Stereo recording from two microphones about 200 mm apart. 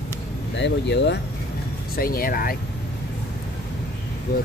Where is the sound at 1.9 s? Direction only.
45° left (ahead or behind).